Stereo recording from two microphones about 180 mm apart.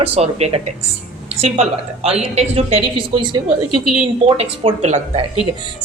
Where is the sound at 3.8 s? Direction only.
5° right (ahead or behind).